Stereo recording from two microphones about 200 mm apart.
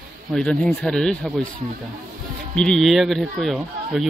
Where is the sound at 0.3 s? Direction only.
5° left (ahead or behind).